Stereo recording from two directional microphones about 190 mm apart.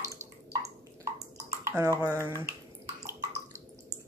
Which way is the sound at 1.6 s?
15° right (ahead or behind).